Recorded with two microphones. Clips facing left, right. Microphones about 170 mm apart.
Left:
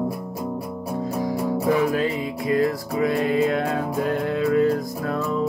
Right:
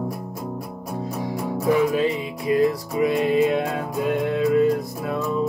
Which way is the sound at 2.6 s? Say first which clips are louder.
Right 2 dB; 20° right (ahead or behind).